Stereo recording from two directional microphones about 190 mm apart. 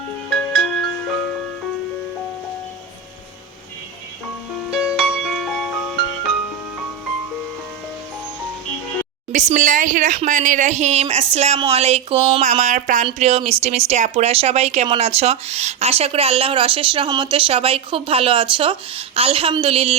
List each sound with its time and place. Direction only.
0.3 s music: 5° left (ahead or behind)
4.7 s music: 5° right (ahead or behind)
9.3 s speech: 40° right (ahead or behind)